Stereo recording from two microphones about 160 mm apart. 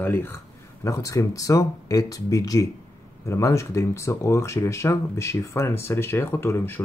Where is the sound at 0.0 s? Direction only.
15° left (ahead or behind).